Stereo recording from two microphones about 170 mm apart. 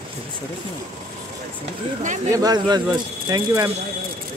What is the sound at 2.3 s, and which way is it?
Speech, 20° right (ahead or behind).